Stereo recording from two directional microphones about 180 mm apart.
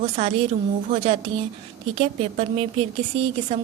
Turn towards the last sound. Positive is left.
turn(degrees=-30)  # may be behind; listen again after turning